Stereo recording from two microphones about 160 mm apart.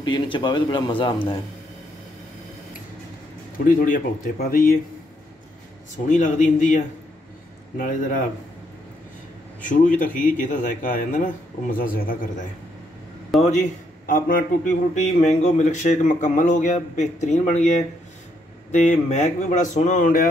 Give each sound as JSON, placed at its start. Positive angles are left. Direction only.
{"t": 0.0, "sound": "a man's voice", "side_deg": 30}
{"t": 3.5, "sound": "speech", "side_deg": 60}
{"t": 6.1, "sound": "a man's voice", "side_deg": 50}
{"t": 9.6, "sound": "speech", "side_deg": 55}
{"t": 13.3, "sound": "a man's voice", "side_deg": 0}
{"t": 14.0, "sound": "speech", "side_deg": 60}
{"t": 15.2, "sound": "a man's voice", "side_deg": 45}
{"t": 18.7, "sound": "a man's voice", "side_deg": 45}